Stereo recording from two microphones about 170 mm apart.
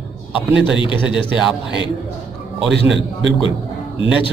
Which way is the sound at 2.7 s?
90° right.